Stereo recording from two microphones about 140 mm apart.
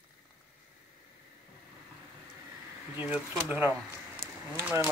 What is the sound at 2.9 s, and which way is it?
Speech, 10° right (ahead or behind).